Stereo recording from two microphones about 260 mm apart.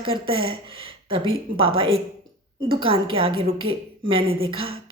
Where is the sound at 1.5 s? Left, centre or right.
Centre.